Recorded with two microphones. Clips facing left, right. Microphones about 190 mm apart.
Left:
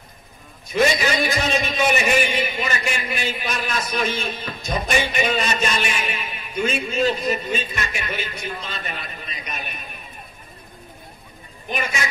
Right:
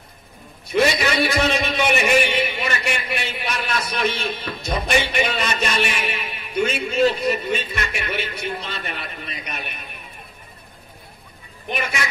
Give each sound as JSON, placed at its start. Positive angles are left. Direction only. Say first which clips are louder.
{"t": 0.7, "sound": "a man's voice", "louder": "even", "side_deg": -65}